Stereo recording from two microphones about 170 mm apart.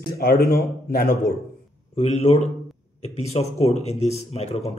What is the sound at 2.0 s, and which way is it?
Speech, 40° left (ahead or behind).